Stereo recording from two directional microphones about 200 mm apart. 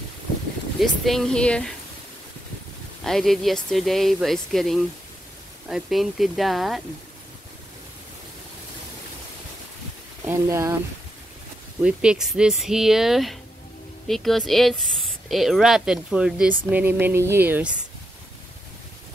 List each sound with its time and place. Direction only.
0.7 s speech: centre (ahead or behind)
3.0 s speech: centre (ahead or behind)
10.2 s speech: 15° right (ahead or behind)
11.8 s speech: 5° right (ahead or behind)